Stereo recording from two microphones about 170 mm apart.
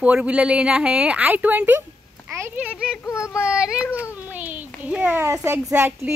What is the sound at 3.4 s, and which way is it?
A child's voice, 5° right (ahead or behind).